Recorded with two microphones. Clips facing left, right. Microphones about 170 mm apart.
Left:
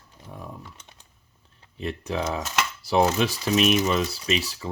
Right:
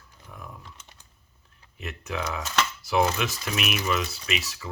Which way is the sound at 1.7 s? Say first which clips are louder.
Left 5 dB; 30° left (ahead or behind).